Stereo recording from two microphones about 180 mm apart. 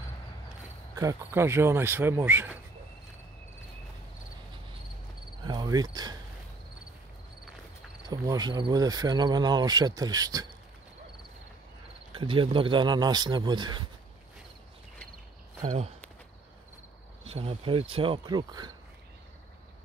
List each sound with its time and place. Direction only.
0.9 s speech: 15° right (ahead or behind)
5.4 s cricket: 20° right (ahead or behind)
8.1 s speech: 20° right (ahead or behind)
12.1 s speech: 30° right (ahead or behind)
15.6 s speech: 40° right (ahead or behind)
17.3 s speech: 30° right (ahead or behind)